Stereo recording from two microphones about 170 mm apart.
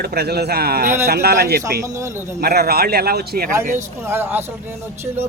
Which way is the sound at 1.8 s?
15° right (ahead or behind).